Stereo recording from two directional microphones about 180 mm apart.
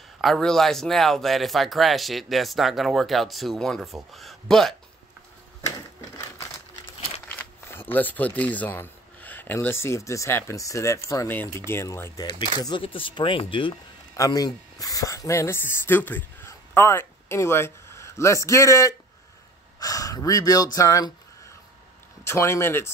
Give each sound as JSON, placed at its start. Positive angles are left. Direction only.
{"t": 0.2, "sound": "speech", "side_deg": 0}
{"t": 5.9, "sound": "a sound", "side_deg": 15}
{"t": 7.3, "sound": "speech", "side_deg": 10}
{"t": 22.2, "sound": "speech", "side_deg": 15}